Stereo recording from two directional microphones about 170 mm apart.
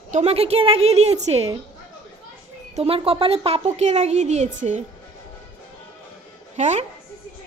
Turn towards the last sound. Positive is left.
turn(degrees=-40)  # may be behind; listen again after turning